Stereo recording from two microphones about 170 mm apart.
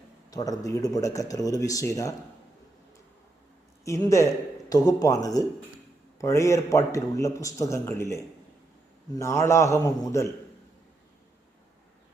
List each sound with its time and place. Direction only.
0.3 s speech: 20° left (ahead or behind)
3.8 s a man's voice: 15° left (ahead or behind)